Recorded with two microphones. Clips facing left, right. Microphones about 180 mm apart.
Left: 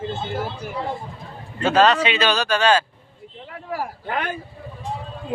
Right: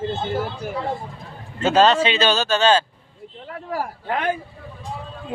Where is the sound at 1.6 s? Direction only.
25° right (ahead or behind).